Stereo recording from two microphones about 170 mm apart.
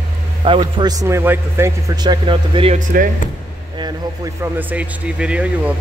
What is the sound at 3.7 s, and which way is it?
Speech, 25° right (ahead or behind).